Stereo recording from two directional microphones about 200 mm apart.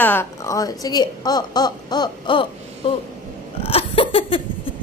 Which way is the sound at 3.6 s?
30° left (ahead or behind).